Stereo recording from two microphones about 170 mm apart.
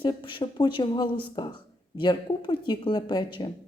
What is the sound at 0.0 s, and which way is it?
Speech, 30° left (ahead or behind).